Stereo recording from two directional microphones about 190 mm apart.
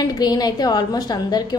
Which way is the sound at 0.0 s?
20° left (ahead or behind).